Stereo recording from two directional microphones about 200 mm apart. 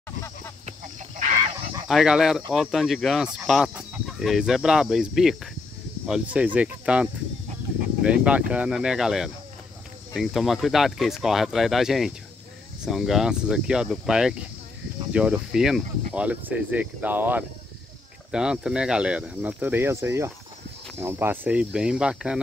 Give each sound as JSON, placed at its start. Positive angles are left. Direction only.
{"t": 0.7, "sound": "fowl", "side_deg": -40}
{"t": 1.9, "sound": "speech", "side_deg": 0}